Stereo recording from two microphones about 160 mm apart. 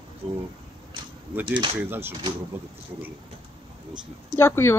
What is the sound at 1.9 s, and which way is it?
Speech, 15° right (ahead or behind).